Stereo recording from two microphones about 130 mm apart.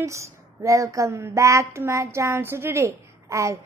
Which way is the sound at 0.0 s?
20° right (ahead or behind).